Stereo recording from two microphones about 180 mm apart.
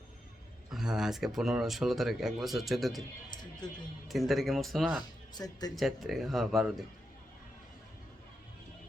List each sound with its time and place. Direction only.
0.7 s speech: 5° right (ahead or behind)
4.1 s speech: centre (ahead or behind)
5.3 s speech: 20° left (ahead or behind)
5.7 s speech: centre (ahead or behind)